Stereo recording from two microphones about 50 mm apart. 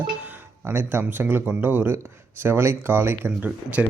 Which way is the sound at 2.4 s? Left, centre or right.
Right.